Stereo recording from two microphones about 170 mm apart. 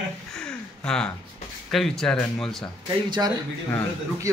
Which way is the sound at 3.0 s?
25° right (ahead or behind).